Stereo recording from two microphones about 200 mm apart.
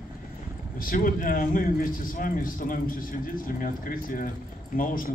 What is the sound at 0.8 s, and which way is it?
A man's voice, 40° left (ahead or behind).